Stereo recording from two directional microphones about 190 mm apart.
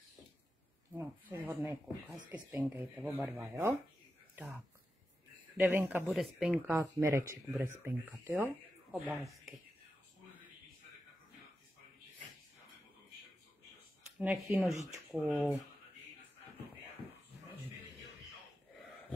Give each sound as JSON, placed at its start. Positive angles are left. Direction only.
{"t": 0.9, "sound": "speech", "side_deg": -10}
{"t": 5.6, "sound": "speech", "side_deg": -10}
{"t": 6.7, "sound": "speech", "side_deg": -15}
{"t": 14.1, "sound": "speech", "side_deg": -5}
{"t": 15.2, "sound": "speech", "side_deg": -5}